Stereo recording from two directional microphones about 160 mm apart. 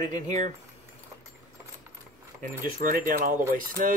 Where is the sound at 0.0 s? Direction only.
25° left (ahead or behind).